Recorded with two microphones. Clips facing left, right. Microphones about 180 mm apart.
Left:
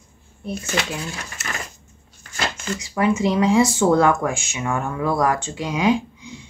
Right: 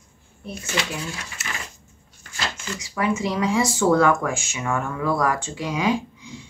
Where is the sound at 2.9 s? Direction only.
25° left (ahead or behind).